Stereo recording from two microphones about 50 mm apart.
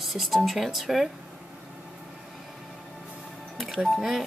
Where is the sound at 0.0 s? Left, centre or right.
Centre.